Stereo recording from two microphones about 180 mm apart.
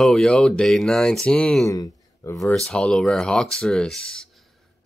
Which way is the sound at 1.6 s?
20° left (ahead or behind).